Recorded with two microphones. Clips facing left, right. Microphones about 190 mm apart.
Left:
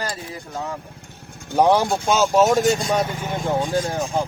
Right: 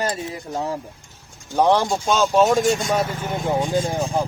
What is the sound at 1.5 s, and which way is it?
Speech, 10° left (ahead or behind).